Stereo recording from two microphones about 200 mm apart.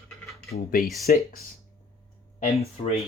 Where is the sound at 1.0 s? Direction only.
45° left (ahead or behind).